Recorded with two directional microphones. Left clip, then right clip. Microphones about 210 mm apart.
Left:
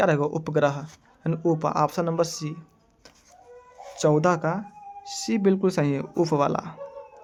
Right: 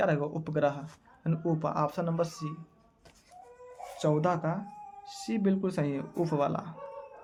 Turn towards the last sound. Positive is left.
turn(degrees=50)  # may be behind; listen again after turning